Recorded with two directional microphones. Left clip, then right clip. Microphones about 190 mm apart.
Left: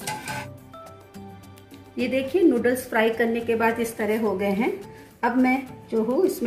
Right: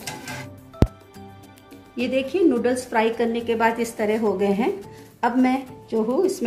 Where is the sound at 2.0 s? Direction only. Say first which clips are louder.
Right 1 dB; 25° right (ahead or behind).